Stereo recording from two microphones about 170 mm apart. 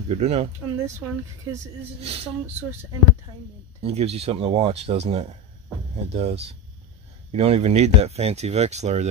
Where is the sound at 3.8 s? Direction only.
35° right (ahead or behind).